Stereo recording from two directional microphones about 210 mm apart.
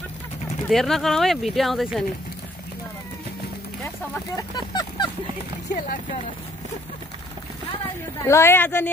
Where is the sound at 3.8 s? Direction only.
15° left (ahead or behind).